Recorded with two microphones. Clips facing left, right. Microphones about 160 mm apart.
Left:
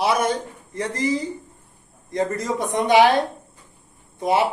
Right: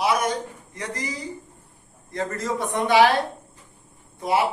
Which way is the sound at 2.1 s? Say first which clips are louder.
Left 4 dB; 15° left (ahead or behind).